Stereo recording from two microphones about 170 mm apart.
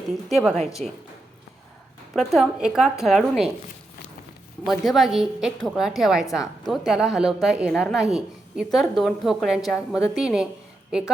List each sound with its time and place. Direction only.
0.3 s a woman's voice: centre (ahead or behind)
0.5 s a woman's voice: 40° right (ahead or behind)
2.1 s a woman's voice: centre (ahead or behind)
4.6 s a woman's voice: centre (ahead or behind)